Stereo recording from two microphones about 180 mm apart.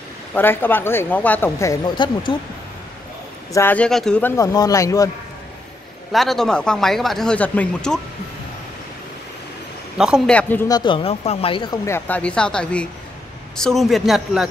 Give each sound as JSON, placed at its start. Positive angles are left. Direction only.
{"t": 0.3, "sound": "speech", "side_deg": 10}
{"t": 3.5, "sound": "speech", "side_deg": 10}
{"t": 4.4, "sound": "speech", "side_deg": 20}
{"t": 6.1, "sound": "speech", "side_deg": 0}
{"t": 9.9, "sound": "speech", "side_deg": -5}
{"t": 10.7, "sound": "speech", "side_deg": 25}